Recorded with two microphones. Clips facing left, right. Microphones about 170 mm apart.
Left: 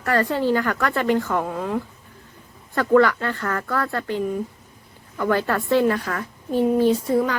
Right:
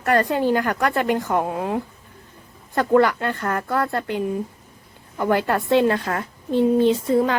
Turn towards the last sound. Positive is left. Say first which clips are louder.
# right 1 dB
turn(degrees=-25)  # may be behind; listen again after turning